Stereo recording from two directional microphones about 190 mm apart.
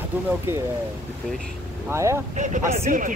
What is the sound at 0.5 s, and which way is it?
Speech, 10° right (ahead or behind).